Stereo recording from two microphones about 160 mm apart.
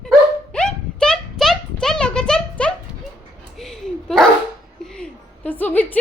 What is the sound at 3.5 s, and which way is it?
Dog, centre (ahead or behind).